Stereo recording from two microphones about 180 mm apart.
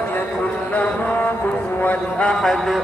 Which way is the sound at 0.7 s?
10° left (ahead or behind).